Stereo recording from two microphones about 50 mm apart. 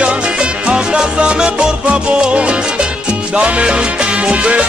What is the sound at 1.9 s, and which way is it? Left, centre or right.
Salsa music, right.